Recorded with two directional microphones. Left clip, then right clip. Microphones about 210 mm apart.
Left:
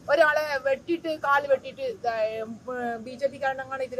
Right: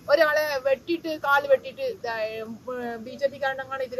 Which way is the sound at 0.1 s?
5° left (ahead or behind).